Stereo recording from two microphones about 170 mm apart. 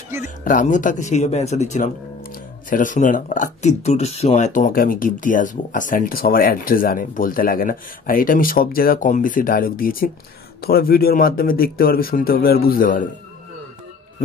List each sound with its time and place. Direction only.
0.2 s speech: 50° left (ahead or behind)